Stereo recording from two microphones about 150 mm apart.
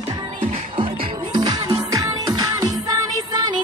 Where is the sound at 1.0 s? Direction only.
30° right (ahead or behind).